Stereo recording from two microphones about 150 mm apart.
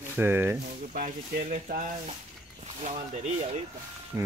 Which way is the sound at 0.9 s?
60° right (ahead or behind).